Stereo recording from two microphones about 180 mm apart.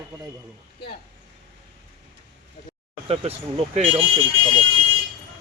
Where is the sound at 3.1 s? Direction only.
35° right (ahead or behind).